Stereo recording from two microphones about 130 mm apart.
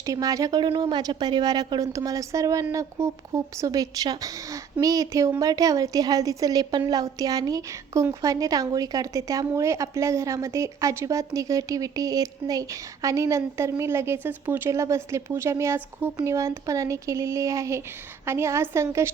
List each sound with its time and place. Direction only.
0.0 s a woman's voice: 25° right (ahead or behind)